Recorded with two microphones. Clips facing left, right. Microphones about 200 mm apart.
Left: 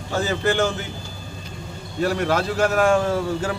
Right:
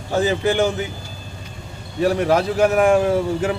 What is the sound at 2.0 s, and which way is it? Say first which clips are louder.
Speech: right 4 dB; 15° right (ahead or behind).